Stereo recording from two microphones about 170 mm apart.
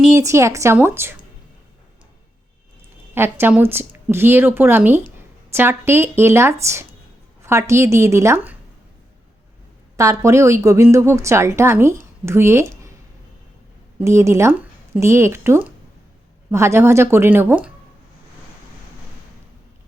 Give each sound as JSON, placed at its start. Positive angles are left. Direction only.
{"t": 0.1, "sound": "a woman's voice", "side_deg": -15}
{"t": 3.2, "sound": "a woman's voice", "side_deg": -15}
{"t": 10.0, "sound": "a woman's voice", "side_deg": -20}
{"t": 14.0, "sound": "a woman's voice", "side_deg": -15}